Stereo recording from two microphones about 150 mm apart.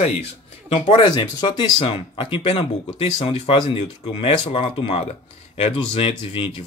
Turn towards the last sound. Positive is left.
turn(degrees=35)  # may be behind; listen again after turning